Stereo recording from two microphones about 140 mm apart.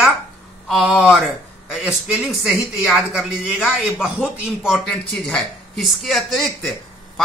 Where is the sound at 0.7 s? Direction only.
Centre (ahead or behind).